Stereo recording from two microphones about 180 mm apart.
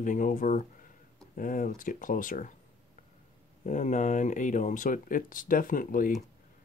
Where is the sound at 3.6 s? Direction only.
45° left (ahead or behind).